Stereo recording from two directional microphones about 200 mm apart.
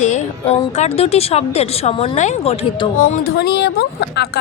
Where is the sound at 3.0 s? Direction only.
50° left (ahead or behind).